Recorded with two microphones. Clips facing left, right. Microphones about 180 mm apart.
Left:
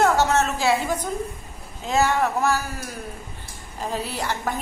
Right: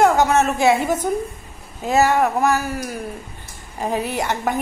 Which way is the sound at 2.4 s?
15° right (ahead or behind).